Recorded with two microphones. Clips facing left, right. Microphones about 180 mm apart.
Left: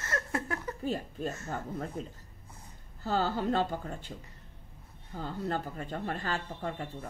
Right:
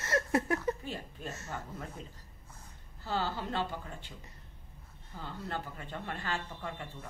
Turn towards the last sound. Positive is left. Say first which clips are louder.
# left 5 dB
turn(degrees=40)  # may be behind; listen again after turning